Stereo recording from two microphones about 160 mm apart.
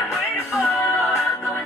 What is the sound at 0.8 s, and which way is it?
Music, 15° left (ahead or behind).